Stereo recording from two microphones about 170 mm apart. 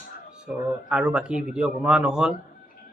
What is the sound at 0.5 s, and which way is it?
A man's voice, 5° right (ahead or behind).